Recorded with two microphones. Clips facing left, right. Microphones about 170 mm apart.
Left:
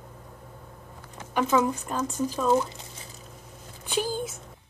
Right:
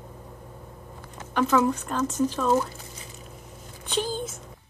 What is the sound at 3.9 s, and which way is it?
Speech, 10° left (ahead or behind).